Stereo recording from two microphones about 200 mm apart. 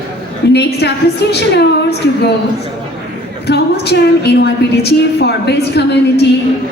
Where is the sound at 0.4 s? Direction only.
55° left (ahead or behind).